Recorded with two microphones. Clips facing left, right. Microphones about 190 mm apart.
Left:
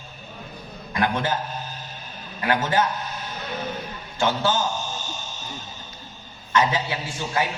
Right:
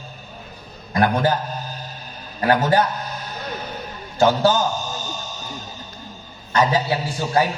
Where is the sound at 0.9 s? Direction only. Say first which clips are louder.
Right 5 dB; 40° right (ahead or behind).